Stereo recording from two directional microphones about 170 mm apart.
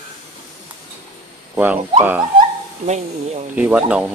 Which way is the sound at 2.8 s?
40° right (ahead or behind).